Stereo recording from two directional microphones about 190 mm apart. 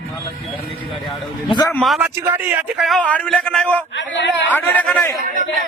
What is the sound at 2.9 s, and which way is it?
Speech, 5° left (ahead or behind).